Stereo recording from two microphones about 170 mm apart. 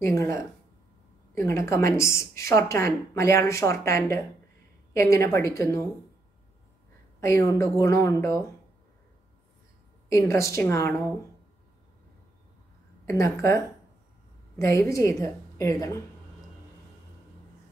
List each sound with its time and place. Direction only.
0.0 s a woman's voice: 15° left (ahead or behind)
7.2 s a woman's voice: 15° left (ahead or behind)
10.0 s a woman's voice: 15° left (ahead or behind)
13.0 s a woman's voice: 15° left (ahead or behind)
14.6 s a woman's voice: 20° left (ahead or behind)